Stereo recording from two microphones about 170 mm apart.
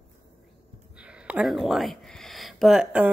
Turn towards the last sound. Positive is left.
turn(degrees=-5)  # may be behind; listen again after turning